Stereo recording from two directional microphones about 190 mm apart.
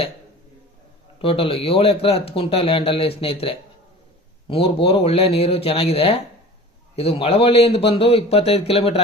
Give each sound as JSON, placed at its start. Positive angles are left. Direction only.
{"t": 1.2, "sound": "a man's voice", "side_deg": 30}